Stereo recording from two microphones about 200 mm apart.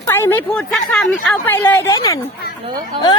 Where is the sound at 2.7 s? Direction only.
25° right (ahead or behind).